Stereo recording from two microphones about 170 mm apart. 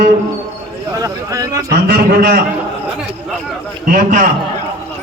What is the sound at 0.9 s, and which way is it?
Speech, 20° right (ahead or behind).